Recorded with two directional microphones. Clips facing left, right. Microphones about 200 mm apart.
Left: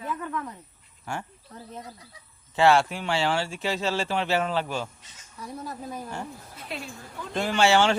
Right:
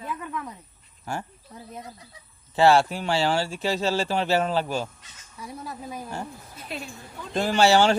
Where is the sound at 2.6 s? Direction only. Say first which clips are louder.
Right 2 dB; 35° right (ahead or behind).